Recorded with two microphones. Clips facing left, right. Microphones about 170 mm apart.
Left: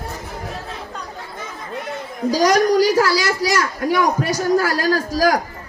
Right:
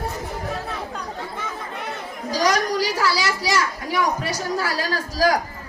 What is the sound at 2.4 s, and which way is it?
A child's voice, 45° left (ahead or behind).